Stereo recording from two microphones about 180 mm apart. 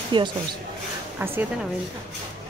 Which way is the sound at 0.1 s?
25° right (ahead or behind).